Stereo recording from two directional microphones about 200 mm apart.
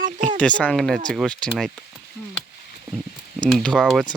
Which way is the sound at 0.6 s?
5° left (ahead or behind).